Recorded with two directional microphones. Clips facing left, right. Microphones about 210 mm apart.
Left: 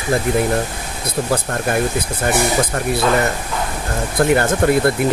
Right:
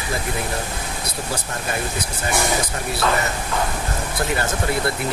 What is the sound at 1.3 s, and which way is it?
Speech, 55° left (ahead or behind).